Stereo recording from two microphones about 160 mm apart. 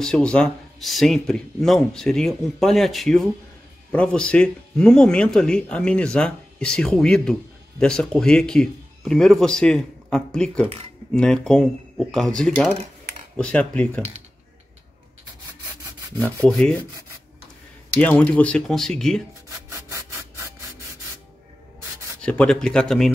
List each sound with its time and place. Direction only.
0.0 s speech: 5° left (ahead or behind)
16.4 s speech: 5° left (ahead or behind)
18.0 s speech: 10° left (ahead or behind)
19.7 s rub: 20° right (ahead or behind)
22.2 s speech: 5° left (ahead or behind)